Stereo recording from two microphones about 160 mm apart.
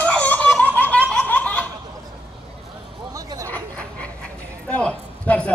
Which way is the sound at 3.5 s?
10° left (ahead or behind).